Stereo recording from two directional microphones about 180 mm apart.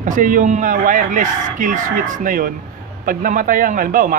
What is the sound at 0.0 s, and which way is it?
Speech, 45° right (ahead or behind).